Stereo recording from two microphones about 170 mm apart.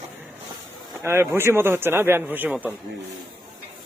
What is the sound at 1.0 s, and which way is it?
A man's voice, 15° right (ahead or behind).